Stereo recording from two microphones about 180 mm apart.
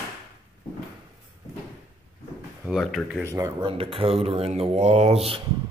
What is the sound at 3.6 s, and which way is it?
Speech, 30° right (ahead or behind).